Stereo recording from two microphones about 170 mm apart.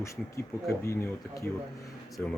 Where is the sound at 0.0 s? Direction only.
15° left (ahead or behind).